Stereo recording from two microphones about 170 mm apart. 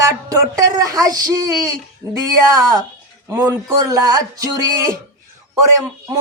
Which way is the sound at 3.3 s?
20° right (ahead or behind).